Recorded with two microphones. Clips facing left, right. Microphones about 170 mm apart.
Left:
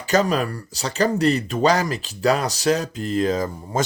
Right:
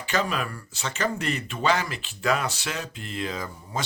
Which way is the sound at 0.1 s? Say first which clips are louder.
Left 8 dB; 40° left (ahead or behind).